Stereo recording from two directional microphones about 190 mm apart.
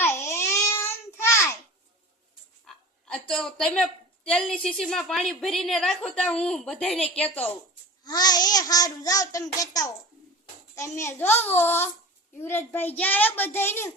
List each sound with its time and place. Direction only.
0.0 s babbling: 10° left (ahead or behind)
2.6 s a woman's voice: 5° left (ahead or behind)
8.0 s a child's voice: 20° left (ahead or behind)